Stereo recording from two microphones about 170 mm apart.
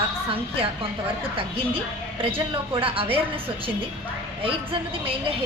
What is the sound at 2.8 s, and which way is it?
Speech, 35° right (ahead or behind).